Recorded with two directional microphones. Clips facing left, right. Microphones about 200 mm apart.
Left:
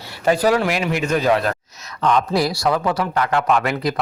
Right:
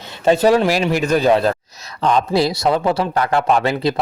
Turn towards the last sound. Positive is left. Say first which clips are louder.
# right 2 dB
turn(degrees=-30)  # may be behind; listen again after turning